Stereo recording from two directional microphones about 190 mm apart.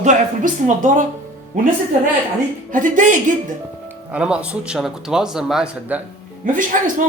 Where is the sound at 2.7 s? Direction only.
45° right (ahead or behind).